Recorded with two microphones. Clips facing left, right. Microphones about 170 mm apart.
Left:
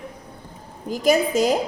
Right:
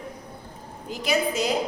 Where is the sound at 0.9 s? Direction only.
45° left (ahead or behind).